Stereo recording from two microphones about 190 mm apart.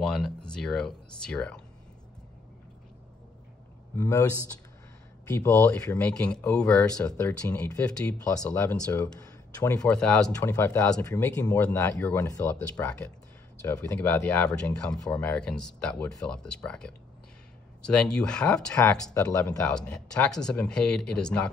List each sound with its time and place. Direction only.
0.0 s speech: 5° left (ahead or behind)
3.9 s speech: 15° left (ahead or behind)
5.3 s speech: 15° left (ahead or behind)
9.8 s speech: 5° left (ahead or behind)